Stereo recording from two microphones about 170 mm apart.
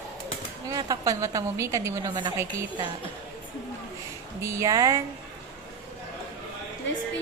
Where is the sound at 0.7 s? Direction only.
20° right (ahead or behind).